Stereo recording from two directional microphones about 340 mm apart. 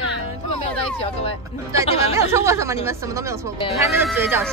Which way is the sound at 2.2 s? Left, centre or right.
Centre.